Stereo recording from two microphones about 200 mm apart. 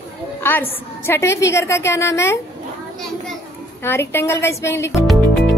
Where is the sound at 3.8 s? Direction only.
10° left (ahead or behind).